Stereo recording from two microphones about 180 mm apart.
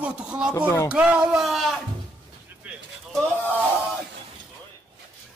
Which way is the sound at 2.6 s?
10° right (ahead or behind).